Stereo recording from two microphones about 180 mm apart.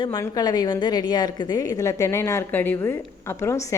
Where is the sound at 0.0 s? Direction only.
20° left (ahead or behind).